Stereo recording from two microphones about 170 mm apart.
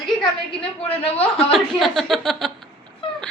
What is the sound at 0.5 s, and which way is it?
A woman's voice, 10° left (ahead or behind).